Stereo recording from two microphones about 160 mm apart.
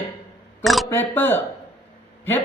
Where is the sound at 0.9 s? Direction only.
10° left (ahead or behind).